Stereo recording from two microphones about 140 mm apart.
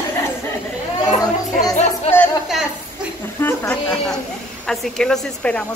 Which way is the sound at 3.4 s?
15° left (ahead or behind).